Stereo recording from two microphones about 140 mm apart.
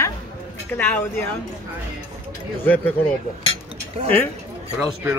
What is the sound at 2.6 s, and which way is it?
Speech, 15° left (ahead or behind).